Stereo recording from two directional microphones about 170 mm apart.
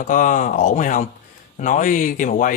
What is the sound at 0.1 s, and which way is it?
Speech, 50° left (ahead or behind).